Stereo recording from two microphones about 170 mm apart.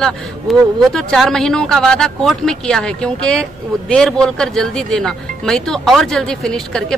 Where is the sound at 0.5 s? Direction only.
Centre (ahead or behind).